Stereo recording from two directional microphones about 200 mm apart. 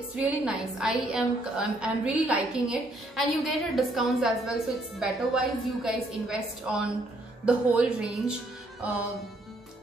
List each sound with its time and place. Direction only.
0.1 s a woman's voice: 5° right (ahead or behind)